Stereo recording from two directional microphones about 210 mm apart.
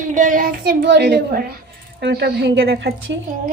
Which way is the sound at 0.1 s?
40° right (ahead or behind).